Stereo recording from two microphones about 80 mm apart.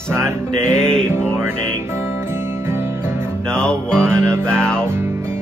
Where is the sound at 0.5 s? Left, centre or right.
Centre.